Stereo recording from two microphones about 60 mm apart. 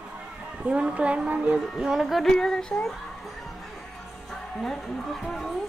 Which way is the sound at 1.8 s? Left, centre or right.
Centre.